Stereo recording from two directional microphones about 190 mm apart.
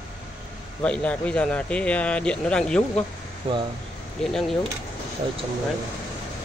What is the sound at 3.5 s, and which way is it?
Speech, 30° right (ahead or behind).